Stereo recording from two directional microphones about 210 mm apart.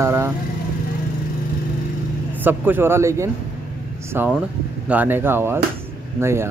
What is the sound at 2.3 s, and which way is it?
Speech, 10° right (ahead or behind).